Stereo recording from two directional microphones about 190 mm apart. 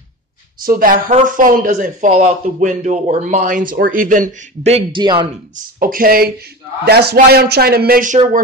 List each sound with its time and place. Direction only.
0.7 s speech: 50° right (ahead or behind); by 5.3 s 25° right (ahead or behind)
5.8 s speech: 50° right (ahead or behind)